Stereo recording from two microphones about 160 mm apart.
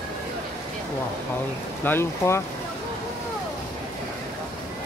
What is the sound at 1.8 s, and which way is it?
Speech, 15° left (ahead or behind).